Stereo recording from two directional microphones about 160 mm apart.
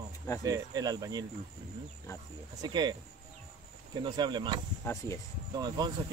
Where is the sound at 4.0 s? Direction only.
30° right (ahead or behind).